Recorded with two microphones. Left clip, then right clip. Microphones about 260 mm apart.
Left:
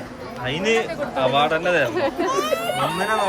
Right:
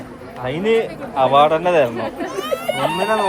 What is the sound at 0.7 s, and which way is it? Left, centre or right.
A man's voice, right.